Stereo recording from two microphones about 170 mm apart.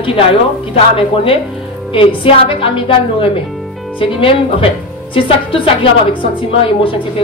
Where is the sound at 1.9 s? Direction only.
30° left (ahead or behind).